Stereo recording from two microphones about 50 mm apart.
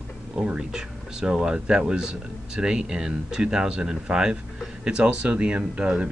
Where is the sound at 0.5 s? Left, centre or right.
Centre.